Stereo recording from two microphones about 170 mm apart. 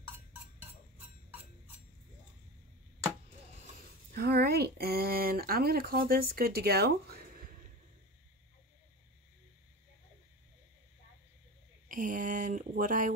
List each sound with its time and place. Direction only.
0.6 s a sound: 10° right (ahead or behind)
4.1 s speech: 65° right (ahead or behind)
11.9 s speech: 50° right (ahead or behind)